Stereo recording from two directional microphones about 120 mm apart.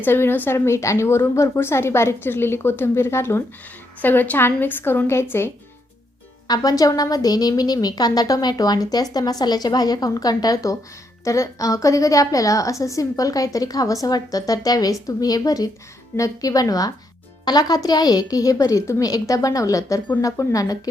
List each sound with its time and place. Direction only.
0.0 s a woman's voice: 20° left (ahead or behind)
6.5 s a woman's voice: 30° left (ahead or behind)